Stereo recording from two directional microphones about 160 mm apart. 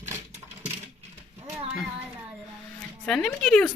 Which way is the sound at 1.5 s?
10° right (ahead or behind).